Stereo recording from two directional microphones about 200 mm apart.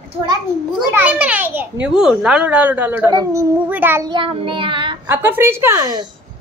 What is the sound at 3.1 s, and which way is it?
Child singing, 15° right (ahead or behind).